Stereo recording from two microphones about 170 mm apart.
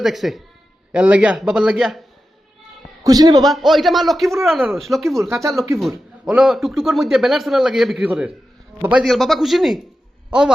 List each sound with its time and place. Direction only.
0.0 s a man's voice: centre (ahead or behind)
3.0 s a man's voice: 20° right (ahead or behind)
3.4 s a man's voice: centre (ahead or behind)